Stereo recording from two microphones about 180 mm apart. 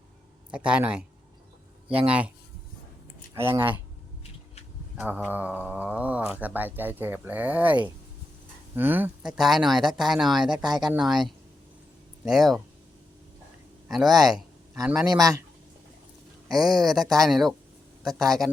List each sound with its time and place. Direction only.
0.5 s speech: 5° right (ahead or behind)
2.0 s speech: 5° right (ahead or behind)
3.3 s speech: 15° right (ahead or behind)
4.9 s speech: 5° right (ahead or behind)
10.6 s speech: 25° right (ahead or behind)
10.9 s speech: centre (ahead or behind)
13.9 s speech: centre (ahead or behind)
16.5 s speech: centre (ahead or behind)